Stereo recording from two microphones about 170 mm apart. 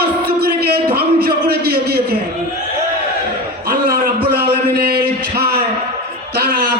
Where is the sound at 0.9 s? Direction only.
65° right (ahead or behind).